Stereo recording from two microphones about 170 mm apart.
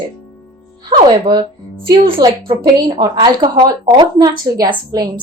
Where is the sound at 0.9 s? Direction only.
25° right (ahead or behind).